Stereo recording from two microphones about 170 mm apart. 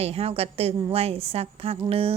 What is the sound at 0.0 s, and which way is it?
A woman's voice, 35° right (ahead or behind).